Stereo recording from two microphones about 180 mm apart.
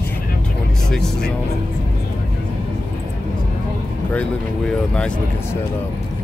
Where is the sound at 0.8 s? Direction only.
5° left (ahead or behind).